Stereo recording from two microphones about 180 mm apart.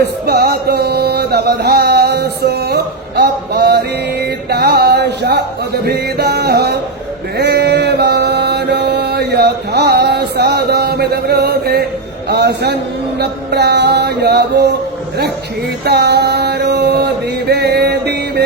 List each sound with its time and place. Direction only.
0.0 s music: 65° right (ahead or behind)
7.3 s mantra: 65° right (ahead or behind)
12.3 s music: 65° right (ahead or behind)
15.8 s music: 65° right (ahead or behind)